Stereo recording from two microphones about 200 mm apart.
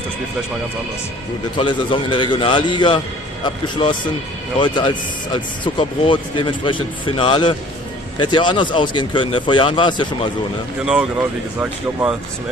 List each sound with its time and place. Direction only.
1.6 s speech: 25° left (ahead or behind)
11.6 s speech: 10° right (ahead or behind)